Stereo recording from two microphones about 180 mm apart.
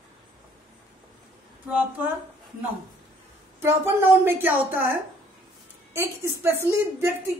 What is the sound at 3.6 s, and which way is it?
Speech, 10° right (ahead or behind).